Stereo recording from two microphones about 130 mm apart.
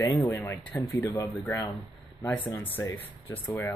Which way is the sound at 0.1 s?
25° left (ahead or behind).